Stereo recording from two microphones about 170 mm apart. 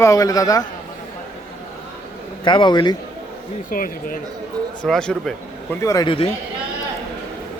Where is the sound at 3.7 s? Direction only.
55° left (ahead or behind).